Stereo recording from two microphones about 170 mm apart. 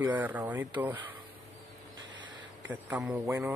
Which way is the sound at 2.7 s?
10° right (ahead or behind).